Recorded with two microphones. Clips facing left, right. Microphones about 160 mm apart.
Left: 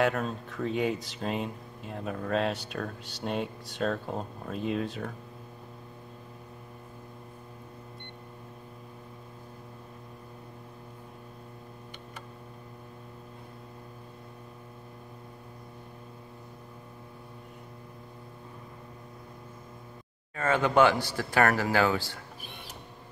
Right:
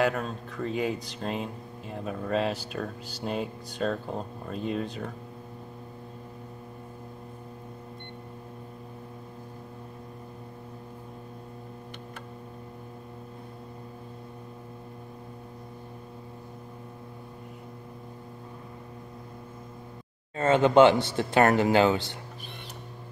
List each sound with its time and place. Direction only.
0.0 s speech: centre (ahead or behind)
20.3 s speech: 20° right (ahead or behind)